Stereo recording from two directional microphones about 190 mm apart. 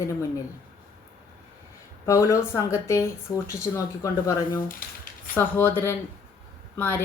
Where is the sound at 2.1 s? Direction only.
15° left (ahead or behind).